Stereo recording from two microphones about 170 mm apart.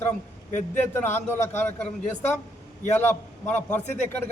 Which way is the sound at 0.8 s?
10° left (ahead or behind).